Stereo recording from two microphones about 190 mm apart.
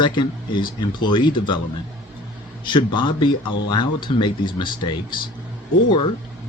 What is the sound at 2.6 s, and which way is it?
Speech, 25° left (ahead or behind).